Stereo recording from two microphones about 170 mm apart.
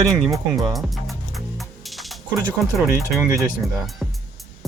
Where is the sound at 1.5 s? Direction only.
Centre (ahead or behind).